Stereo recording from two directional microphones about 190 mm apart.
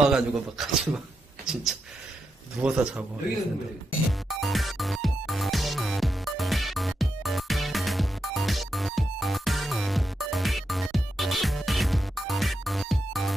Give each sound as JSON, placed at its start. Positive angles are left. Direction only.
{"t": 0.1, "sound": "speech", "side_deg": -5}
{"t": 4.3, "sound": "music", "side_deg": 0}